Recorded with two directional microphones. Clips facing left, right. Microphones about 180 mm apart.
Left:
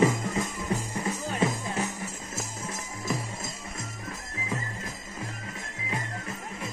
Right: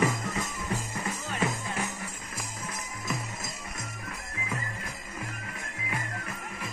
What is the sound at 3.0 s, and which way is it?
Music, 30° left (ahead or behind).